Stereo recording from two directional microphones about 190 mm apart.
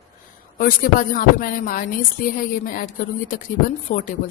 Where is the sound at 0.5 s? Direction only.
45° left (ahead or behind).